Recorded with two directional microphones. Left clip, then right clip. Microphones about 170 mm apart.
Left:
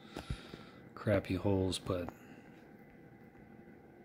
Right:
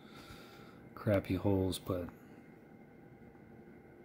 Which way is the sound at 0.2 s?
5° right (ahead or behind).